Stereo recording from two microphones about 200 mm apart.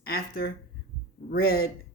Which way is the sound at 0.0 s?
50° left (ahead or behind).